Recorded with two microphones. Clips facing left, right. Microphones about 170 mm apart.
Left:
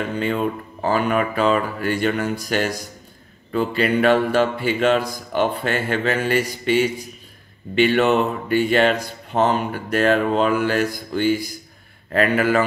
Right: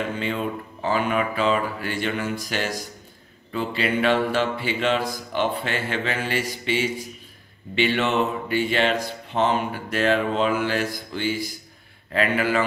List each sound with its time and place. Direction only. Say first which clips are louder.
0.2 s speech: left 5 dB; 45° left (ahead or behind)
3.5 s speech: left 5 dB; 45° left (ahead or behind)